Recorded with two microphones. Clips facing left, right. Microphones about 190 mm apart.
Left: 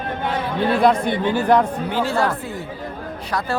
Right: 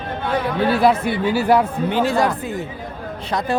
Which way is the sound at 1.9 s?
15° right (ahead or behind).